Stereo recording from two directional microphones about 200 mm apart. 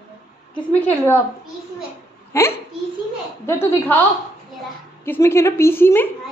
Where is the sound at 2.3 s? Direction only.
15° left (ahead or behind).